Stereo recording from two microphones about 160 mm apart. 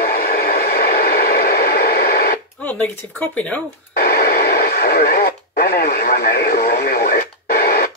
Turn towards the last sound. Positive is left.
turn(degrees=75)  # may be behind; listen again after turning